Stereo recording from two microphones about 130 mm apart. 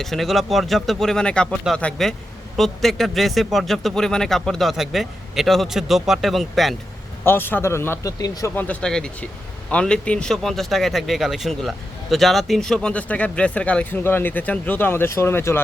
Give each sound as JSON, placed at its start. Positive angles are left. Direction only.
{"t": 0.0, "sound": "a man's voice", "side_deg": 0}
{"t": 7.3, "sound": "speech", "side_deg": 15}
{"t": 8.5, "sound": "a man's voice", "side_deg": 10}